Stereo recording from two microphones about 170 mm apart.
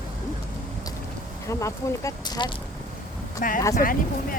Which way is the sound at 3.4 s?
50° left (ahead or behind).